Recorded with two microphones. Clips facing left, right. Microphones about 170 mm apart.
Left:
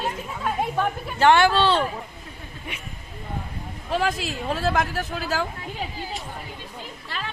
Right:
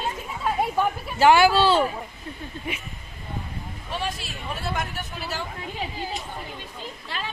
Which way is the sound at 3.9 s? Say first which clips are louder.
Left 7 dB; 90° left.